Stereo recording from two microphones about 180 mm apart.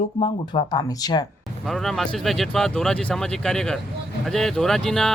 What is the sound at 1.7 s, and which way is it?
Speech, centre (ahead or behind).